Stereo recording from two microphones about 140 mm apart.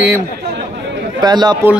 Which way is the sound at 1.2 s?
30° right (ahead or behind).